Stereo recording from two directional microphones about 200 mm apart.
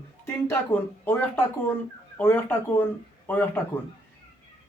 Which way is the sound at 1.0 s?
10° left (ahead or behind).